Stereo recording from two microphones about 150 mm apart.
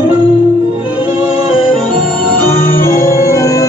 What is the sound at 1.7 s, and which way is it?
Organ, 10° left (ahead or behind).